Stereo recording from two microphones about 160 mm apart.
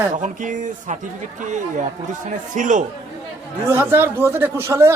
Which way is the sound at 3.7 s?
15° right (ahead or behind).